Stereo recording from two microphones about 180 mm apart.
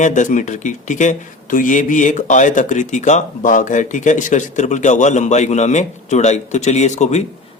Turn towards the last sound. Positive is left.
turn(degrees=40)  # may be behind; listen again after turning